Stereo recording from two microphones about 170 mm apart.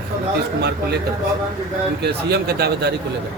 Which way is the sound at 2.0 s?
70° right (ahead or behind).